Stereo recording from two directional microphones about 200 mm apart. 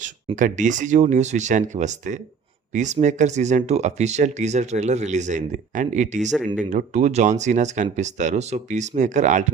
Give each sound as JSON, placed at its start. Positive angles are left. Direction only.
{"t": 0.3, "sound": "speech", "side_deg": -40}